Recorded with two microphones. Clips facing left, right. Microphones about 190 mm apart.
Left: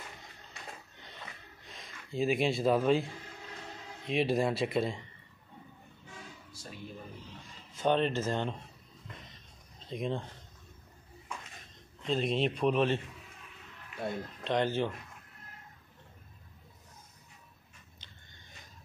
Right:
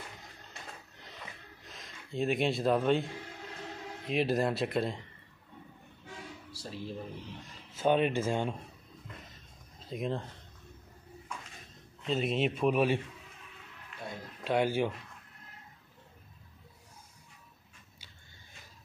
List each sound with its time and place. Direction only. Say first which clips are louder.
0.9 s a sound: right 1 dB; centre (ahead or behind)
4.1 s a man's voice: even; centre (ahead or behind)
6.6 s speech: right 5 dB; 30° right (ahead or behind)
7.7 s speech: right 1 dB; 10° right (ahead or behind)
9.8 s speech: even; centre (ahead or behind)
12.0 s a man's voice: even; 5° right (ahead or behind)
14.4 s speech: right 2 dB; 10° right (ahead or behind)